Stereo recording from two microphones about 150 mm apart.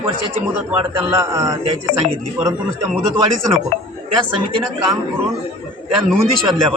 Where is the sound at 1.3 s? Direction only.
20° right (ahead or behind).